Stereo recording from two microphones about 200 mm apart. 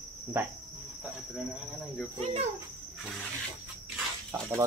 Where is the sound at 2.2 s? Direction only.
30° right (ahead or behind).